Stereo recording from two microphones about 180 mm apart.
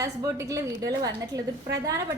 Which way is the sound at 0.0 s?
20° right (ahead or behind).